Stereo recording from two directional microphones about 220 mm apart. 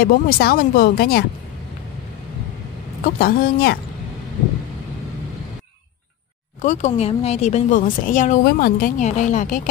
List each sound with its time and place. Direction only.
0.0 s speech: 45° left (ahead or behind)
3.0 s speech: 40° left (ahead or behind)
6.6 s speech: 35° left (ahead or behind)